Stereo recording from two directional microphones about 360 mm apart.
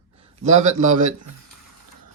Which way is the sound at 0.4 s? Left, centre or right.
Centre.